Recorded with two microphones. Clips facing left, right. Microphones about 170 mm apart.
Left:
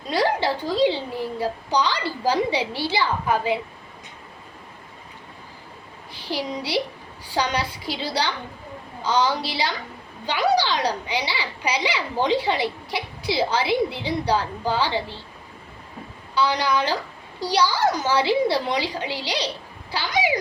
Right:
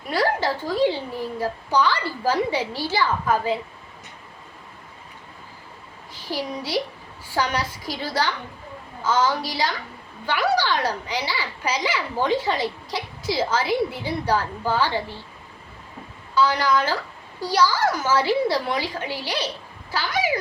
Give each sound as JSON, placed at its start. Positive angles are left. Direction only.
{"t": 0.0, "sound": "a woman's voice", "side_deg": 15}
{"t": 6.3, "sound": "a child's voice", "side_deg": 15}
{"t": 16.3, "sound": "a child's voice", "side_deg": 15}